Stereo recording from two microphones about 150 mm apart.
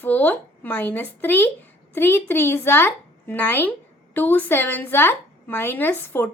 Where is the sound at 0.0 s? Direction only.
10° left (ahead or behind).